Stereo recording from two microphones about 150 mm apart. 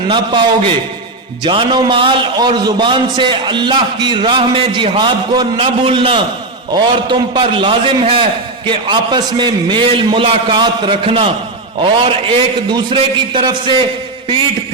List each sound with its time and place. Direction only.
0.1 s a man's voice: 30° right (ahead or behind)
1.5 s a man's voice: 35° right (ahead or behind)